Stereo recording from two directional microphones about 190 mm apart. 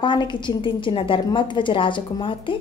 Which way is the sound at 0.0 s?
25° left (ahead or behind).